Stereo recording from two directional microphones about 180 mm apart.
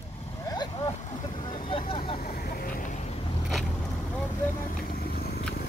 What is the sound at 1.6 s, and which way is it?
Speech, 30° left (ahead or behind).